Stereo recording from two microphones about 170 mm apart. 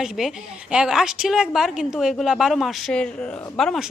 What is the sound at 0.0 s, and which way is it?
A woman's voice, centre (ahead or behind).